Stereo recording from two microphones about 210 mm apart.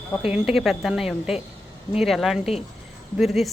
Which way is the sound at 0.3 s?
5° right (ahead or behind).